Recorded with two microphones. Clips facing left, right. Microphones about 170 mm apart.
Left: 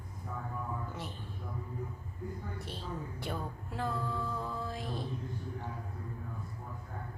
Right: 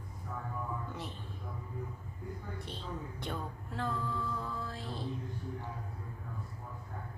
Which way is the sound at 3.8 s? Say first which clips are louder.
Left 1 dB; 10° left (ahead or behind).